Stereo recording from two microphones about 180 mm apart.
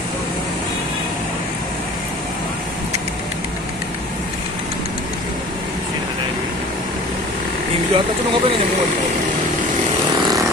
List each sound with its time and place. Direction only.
7.9 s speech: 30° right (ahead or behind)